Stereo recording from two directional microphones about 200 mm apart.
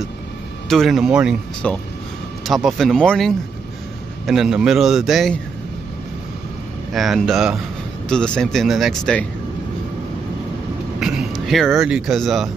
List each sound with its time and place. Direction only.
0.7 s speech: centre (ahead or behind)
6.9 s speech: centre (ahead or behind)
11.0 s speech: centre (ahead or behind)